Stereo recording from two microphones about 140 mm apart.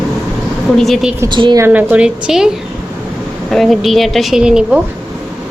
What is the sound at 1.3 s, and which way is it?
Speech, 35° right (ahead or behind).